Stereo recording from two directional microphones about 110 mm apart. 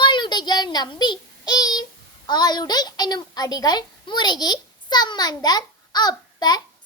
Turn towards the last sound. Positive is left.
turn(degrees=40)  # may be behind; listen again after turning